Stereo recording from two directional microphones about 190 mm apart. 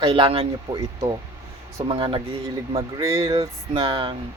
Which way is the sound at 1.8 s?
30° right (ahead or behind).